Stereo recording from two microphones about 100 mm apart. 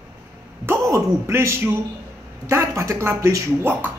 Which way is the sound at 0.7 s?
30° right (ahead or behind).